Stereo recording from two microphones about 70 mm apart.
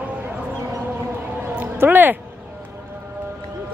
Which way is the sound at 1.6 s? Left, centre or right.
Right.